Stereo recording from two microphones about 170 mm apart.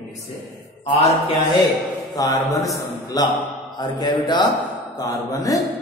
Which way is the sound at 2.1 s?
20° left (ahead or behind).